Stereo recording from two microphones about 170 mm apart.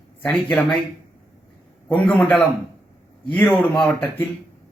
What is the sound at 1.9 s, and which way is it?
Speech, 10° left (ahead or behind).